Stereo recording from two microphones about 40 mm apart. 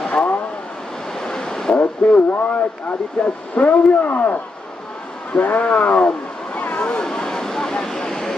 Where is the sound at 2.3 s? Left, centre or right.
Left.